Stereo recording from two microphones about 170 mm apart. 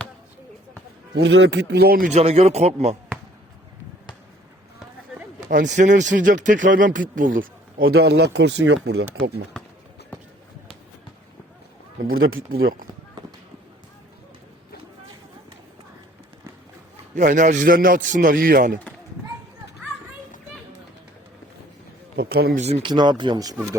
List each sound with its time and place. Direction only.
1.2 s speech: 90° right; by 2.0 s 65° right (ahead or behind)
2.1 s a man's voice: 40° right (ahead or behind)
5.5 s a man's voice: 50° right (ahead or behind); by 9.0 s 85° right
12.0 s speech: 60° right (ahead or behind)
17.2 s a man's voice: 45° right (ahead or behind)
22.1 s a man's voice: 65° right (ahead or behind)
22.6 s a man's voice: 40° right (ahead or behind)
22.9 s speech: 25° right (ahead or behind)